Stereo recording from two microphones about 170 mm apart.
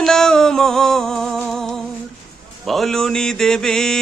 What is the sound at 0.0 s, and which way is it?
Music, centre (ahead or behind).